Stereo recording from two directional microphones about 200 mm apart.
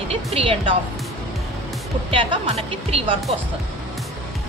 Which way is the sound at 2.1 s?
25° right (ahead or behind).